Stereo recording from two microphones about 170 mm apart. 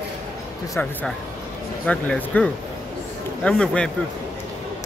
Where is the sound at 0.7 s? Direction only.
10° left (ahead or behind).